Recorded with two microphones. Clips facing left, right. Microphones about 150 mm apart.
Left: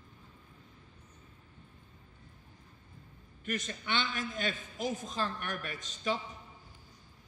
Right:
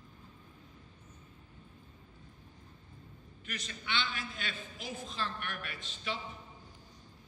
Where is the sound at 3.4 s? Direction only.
50° left (ahead or behind).